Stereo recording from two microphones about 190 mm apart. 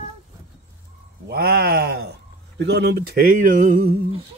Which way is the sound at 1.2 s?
55° right (ahead or behind).